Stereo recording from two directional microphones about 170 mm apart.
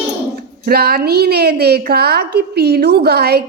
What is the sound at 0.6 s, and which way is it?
Speech, 65° right (ahead or behind).